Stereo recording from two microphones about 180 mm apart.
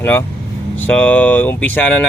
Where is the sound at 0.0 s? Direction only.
10° left (ahead or behind).